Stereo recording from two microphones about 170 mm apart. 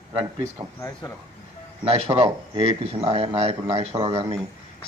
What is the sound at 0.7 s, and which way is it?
Speech, 20° left (ahead or behind).